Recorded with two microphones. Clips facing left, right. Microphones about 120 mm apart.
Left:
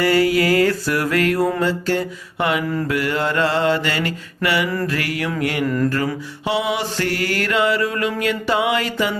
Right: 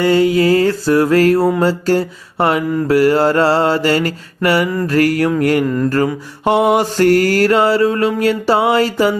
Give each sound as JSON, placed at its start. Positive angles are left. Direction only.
{"t": 0.0, "sound": "mantra", "side_deg": -25}